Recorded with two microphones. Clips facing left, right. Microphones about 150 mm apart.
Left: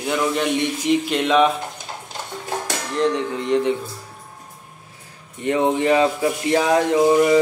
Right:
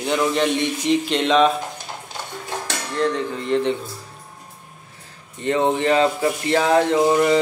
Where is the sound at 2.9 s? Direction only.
20° left (ahead or behind).